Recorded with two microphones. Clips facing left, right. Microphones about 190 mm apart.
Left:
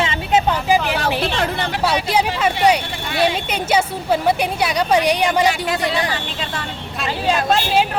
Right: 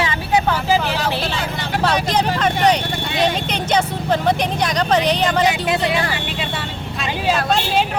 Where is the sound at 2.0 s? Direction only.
10° left (ahead or behind).